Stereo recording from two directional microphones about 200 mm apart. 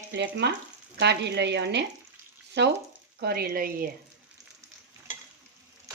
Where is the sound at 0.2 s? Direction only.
60° right (ahead or behind).